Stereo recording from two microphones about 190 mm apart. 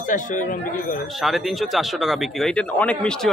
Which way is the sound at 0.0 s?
45° left (ahead or behind).